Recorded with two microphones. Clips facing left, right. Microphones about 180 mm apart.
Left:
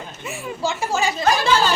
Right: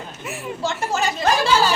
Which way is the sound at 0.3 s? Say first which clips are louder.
Left 1 dB; 5° right (ahead or behind).